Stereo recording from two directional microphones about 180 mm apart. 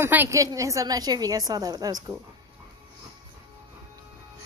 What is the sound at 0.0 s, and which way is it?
A woman's voice, 10° right (ahead or behind).